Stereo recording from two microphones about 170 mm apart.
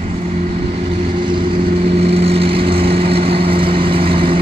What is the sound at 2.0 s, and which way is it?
Vehicle, 35° right (ahead or behind).